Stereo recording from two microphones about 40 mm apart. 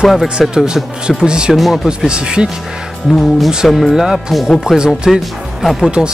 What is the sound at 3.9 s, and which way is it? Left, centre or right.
Speech, centre.